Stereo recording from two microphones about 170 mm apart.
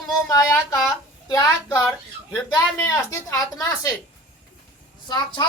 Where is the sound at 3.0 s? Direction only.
20° left (ahead or behind).